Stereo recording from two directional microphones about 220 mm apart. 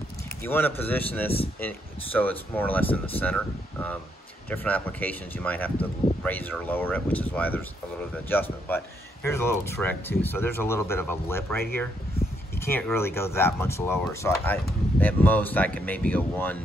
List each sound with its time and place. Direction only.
0.4 s speech: 10° left (ahead or behind)